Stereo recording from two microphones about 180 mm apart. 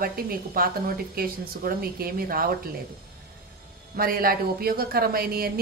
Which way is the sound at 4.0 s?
55° right (ahead or behind).